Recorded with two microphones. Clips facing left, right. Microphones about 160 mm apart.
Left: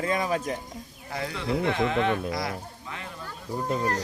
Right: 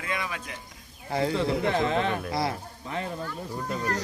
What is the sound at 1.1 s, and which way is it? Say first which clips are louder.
Speech: right 4 dB; 30° right (ahead or behind).